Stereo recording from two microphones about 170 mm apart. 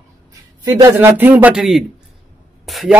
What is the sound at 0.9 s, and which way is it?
Speech, 10° right (ahead or behind).